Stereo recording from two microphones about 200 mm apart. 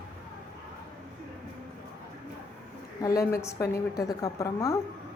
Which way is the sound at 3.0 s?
15° left (ahead or behind).